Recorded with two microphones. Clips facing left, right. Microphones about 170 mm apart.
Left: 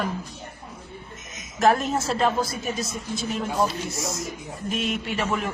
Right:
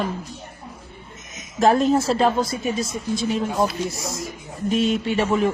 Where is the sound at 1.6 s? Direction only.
30° right (ahead or behind).